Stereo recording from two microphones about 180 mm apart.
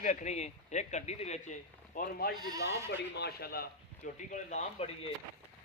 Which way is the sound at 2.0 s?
60° left (ahead or behind).